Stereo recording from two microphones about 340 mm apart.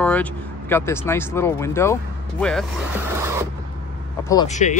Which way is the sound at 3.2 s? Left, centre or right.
Centre.